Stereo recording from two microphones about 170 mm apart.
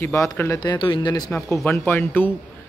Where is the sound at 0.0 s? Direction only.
15° left (ahead or behind).